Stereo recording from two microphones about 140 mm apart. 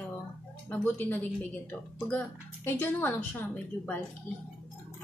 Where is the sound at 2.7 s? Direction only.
15° left (ahead or behind).